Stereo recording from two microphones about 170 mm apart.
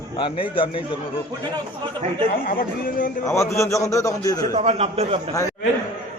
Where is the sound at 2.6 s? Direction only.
55° left (ahead or behind).